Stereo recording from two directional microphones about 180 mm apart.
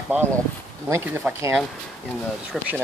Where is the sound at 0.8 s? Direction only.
15° right (ahead or behind).